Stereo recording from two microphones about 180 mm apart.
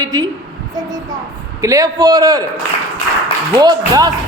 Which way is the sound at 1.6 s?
20° right (ahead or behind).